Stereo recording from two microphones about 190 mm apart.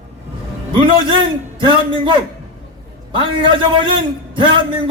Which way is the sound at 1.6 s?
25° right (ahead or behind).